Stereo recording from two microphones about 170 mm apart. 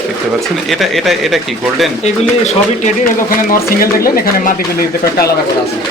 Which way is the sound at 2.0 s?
40° left (ahead or behind).